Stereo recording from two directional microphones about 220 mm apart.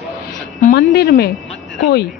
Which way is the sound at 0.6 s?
45° left (ahead or behind).